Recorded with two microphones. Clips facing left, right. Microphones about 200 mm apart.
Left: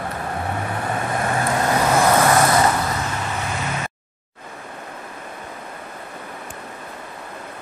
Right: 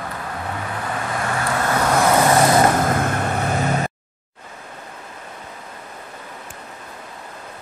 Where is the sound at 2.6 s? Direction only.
50° right (ahead or behind).